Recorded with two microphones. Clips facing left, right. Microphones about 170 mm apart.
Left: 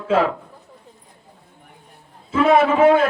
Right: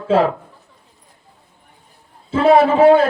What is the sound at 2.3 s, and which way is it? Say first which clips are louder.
Speech: right 3 dB; 30° right (ahead or behind).